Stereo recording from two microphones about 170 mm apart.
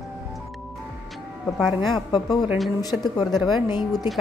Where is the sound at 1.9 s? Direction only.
25° left (ahead or behind).